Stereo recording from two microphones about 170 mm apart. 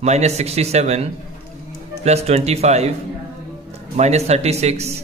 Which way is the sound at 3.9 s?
40° right (ahead or behind).